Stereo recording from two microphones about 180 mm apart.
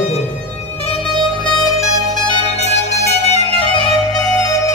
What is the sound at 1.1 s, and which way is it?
Music, centre (ahead or behind).